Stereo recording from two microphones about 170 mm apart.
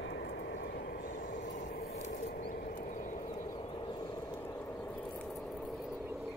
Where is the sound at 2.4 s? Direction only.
55° left (ahead or behind).